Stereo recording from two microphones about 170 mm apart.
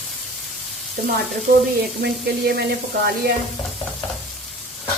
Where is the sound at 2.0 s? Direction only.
70° right (ahead or behind).